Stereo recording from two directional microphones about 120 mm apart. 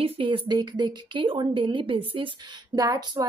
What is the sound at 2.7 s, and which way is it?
Speech, 30° right (ahead or behind).